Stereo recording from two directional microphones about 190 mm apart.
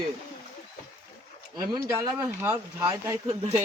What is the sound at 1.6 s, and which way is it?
Speech, 15° right (ahead or behind).